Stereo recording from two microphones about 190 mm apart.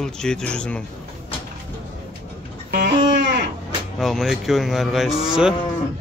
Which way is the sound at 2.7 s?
60° right (ahead or behind).